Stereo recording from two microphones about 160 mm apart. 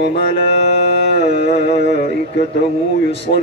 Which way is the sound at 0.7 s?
90° right.